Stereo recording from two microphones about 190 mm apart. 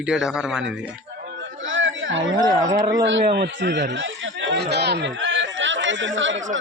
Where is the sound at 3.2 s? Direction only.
55° right (ahead or behind).